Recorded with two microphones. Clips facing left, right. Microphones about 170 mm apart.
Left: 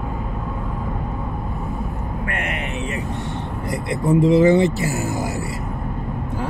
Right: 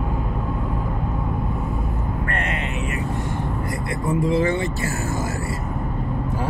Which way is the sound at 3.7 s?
20° left (ahead or behind).